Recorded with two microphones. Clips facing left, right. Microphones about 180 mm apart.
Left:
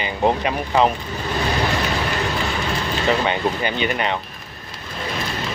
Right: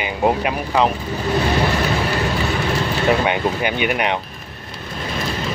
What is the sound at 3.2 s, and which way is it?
Speech, 10° right (ahead or behind).